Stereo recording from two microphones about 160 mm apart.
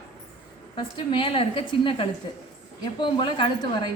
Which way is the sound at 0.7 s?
30° left (ahead or behind).